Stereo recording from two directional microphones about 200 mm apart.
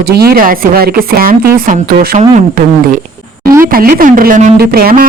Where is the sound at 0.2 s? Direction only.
50° right (ahead or behind).